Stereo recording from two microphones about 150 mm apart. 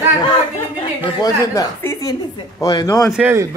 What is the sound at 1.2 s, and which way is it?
Speech, 20° left (ahead or behind).